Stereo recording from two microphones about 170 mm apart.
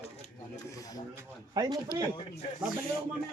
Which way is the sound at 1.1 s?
20° right (ahead or behind).